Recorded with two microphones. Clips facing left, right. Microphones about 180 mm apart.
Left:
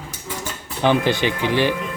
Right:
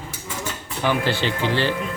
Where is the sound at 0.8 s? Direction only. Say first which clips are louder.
Left 4 dB; 15° left (ahead or behind).